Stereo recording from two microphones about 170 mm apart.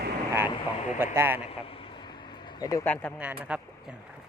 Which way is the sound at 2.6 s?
20° left (ahead or behind).